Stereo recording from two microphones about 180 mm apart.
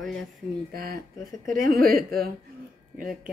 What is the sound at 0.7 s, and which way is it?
A woman's voice, 55° right (ahead or behind).